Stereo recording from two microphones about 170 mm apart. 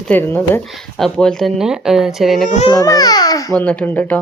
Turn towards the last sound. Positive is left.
turn(degrees=10)  # may be behind; listen again after turning